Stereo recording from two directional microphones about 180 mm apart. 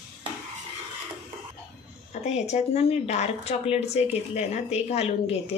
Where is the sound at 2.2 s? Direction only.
40° left (ahead or behind).